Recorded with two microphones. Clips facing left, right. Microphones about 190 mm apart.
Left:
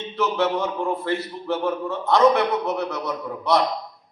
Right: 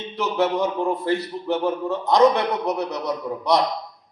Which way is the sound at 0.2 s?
15° right (ahead or behind).